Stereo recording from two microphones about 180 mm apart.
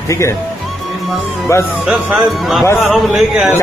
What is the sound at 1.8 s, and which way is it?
Speech, centre (ahead or behind).